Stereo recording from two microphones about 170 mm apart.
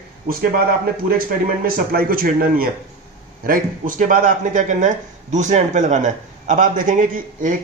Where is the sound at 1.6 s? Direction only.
60° right (ahead or behind).